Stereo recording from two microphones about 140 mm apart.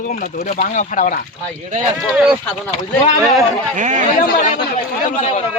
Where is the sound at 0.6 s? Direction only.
70° left (ahead or behind).